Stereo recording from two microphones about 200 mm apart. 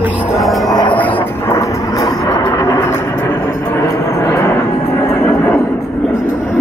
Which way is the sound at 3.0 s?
15° left (ahead or behind).